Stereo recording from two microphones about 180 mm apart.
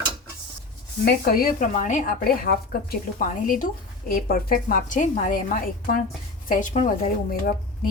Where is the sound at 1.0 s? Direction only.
60° left (ahead or behind).